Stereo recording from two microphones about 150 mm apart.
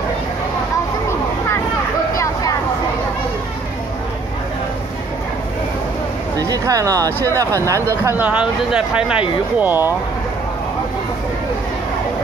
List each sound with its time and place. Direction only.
6.3 s speech: 25° right (ahead or behind)